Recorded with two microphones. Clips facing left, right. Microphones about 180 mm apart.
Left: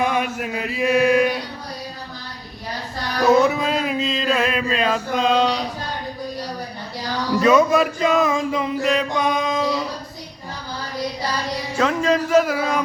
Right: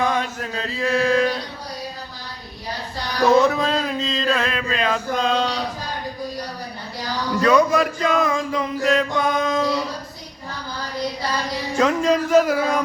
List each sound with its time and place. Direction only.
0.0 s chant: 15° left (ahead or behind)
3.2 s male singing: 5° left (ahead or behind)
7.4 s music: 20° left (ahead or behind)
11.8 s speech: 5° left (ahead or behind)